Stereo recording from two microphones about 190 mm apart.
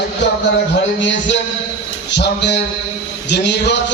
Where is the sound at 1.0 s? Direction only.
75° left (ahead or behind).